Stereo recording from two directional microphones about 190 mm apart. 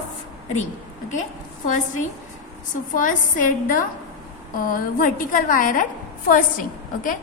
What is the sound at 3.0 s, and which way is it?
A woman's voice, 45° left (ahead or behind).